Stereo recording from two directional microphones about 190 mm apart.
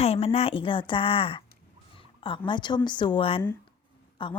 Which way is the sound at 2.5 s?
25° left (ahead or behind).